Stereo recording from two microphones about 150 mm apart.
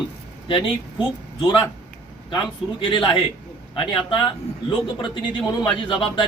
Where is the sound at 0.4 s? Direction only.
30° left (ahead or behind).